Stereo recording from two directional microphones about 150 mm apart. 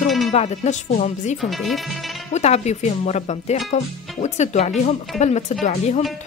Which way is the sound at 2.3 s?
50° left (ahead or behind).